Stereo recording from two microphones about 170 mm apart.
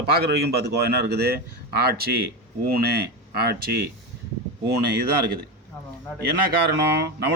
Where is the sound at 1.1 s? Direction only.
70° right (ahead or behind).